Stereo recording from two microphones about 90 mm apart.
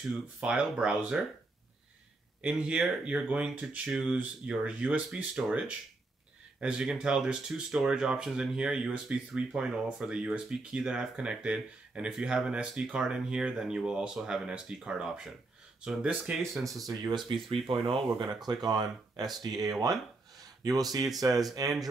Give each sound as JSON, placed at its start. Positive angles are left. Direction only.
{"t": 0.4, "sound": "speech", "side_deg": -10}
{"t": 2.4, "sound": "speech", "side_deg": -10}
{"t": 16.6, "sound": "speech", "side_deg": -40}
{"t": 17.6, "sound": "speech", "side_deg": -90}
{"t": 18.1, "sound": "speech", "side_deg": -50}